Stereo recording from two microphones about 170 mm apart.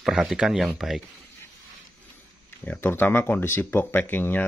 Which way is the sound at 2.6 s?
10° left (ahead or behind).